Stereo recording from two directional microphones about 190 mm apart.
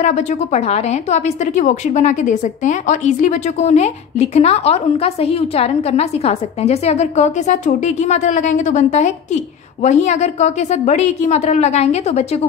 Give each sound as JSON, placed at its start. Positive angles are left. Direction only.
{"t": 0.0, "sound": "a woman's voice", "side_deg": 35}